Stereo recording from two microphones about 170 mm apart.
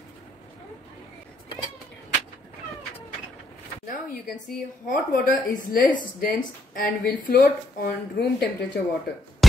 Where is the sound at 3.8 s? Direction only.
55° left (ahead or behind).